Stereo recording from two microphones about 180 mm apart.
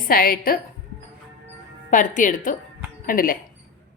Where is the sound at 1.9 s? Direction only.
45° left (ahead or behind).